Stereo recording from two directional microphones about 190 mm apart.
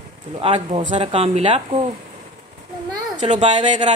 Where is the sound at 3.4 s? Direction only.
35° right (ahead or behind).